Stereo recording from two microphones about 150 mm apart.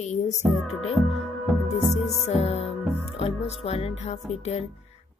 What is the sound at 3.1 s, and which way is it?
A woman's voice, 45° left (ahead or behind).